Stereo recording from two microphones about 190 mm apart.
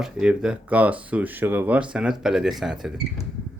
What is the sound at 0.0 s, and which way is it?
Speech, 5° right (ahead or behind).